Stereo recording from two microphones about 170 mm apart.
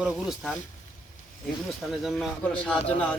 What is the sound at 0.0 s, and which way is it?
Speech, centre (ahead or behind).